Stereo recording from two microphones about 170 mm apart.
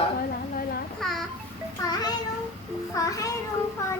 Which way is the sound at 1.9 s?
25° left (ahead or behind).